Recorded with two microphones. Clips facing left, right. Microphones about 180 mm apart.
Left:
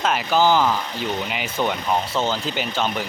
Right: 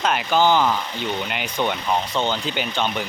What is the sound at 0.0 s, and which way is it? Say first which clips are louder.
Speech: even; centre (ahead or behind).